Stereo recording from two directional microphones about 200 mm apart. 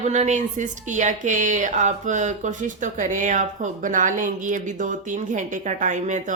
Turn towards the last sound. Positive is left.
turn(degrees=-40)  # may be behind; listen again after turning